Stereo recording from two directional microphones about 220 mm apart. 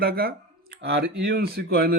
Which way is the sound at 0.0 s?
40° right (ahead or behind).